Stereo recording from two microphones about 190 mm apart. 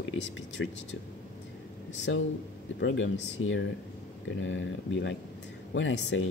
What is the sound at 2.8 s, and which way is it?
Speech, 90° left.